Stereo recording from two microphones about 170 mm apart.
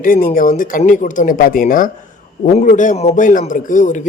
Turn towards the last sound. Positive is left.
turn(degrees=50)  # may be behind; listen again after turning